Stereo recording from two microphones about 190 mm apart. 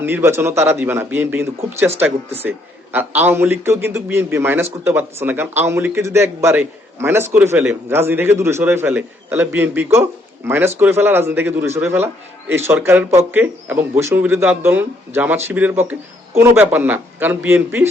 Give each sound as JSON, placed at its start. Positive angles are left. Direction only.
{"t": 0.0, "sound": "a man's voice", "side_deg": -10}